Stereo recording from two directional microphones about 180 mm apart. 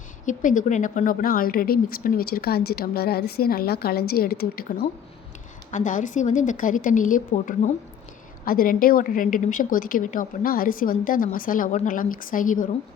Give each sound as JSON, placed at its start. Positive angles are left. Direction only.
{"t": 0.3, "sound": "a woman's voice", "side_deg": 45}
{"t": 5.7, "sound": "a woman's voice", "side_deg": 45}